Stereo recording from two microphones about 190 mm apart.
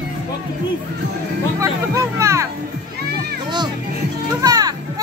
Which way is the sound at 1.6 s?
15° right (ahead or behind).